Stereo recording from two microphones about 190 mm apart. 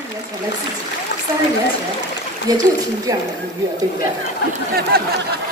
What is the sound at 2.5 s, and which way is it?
Speech, 20° right (ahead or behind).